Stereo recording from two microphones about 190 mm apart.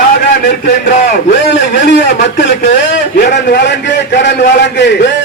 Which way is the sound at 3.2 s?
60° left (ahead or behind).